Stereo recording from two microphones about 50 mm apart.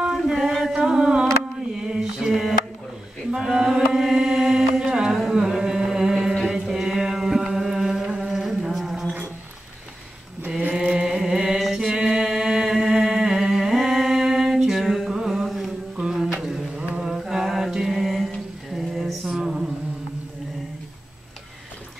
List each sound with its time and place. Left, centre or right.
0.1 s chant: centre
0.7 s a sound: centre
1.9 s mantra: centre
3.3 s chant: centre
5.3 s music: centre
10.7 s chant: centre
11.6 s mantra: centre
11.9 s chant: centre
15.1 s a sound: centre
16.3 s mantra: centre